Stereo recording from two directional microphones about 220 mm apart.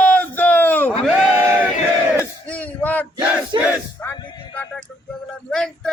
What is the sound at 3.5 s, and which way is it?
Battle cry, 20° right (ahead or behind).